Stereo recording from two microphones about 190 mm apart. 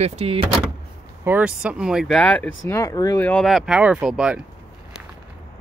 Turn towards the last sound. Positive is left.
turn(degrees=-5)  # may be behind; listen again after turning